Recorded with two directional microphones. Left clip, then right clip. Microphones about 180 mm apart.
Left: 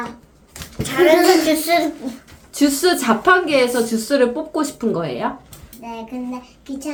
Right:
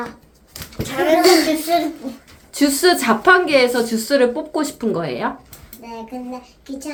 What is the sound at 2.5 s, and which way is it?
Speech, 20° right (ahead or behind).